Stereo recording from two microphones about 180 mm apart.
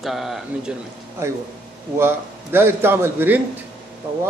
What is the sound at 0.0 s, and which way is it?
Speech, centre (ahead or behind).